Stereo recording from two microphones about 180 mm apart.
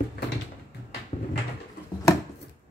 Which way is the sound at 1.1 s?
40° left (ahead or behind).